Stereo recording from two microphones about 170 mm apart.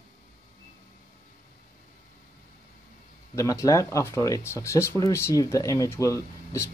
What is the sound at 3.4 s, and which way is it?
Speech, 20° left (ahead or behind).